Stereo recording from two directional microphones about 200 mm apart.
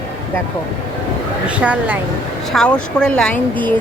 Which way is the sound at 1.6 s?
5° right (ahead or behind).